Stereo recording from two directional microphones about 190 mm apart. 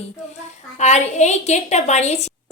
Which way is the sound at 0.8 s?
35° left (ahead or behind).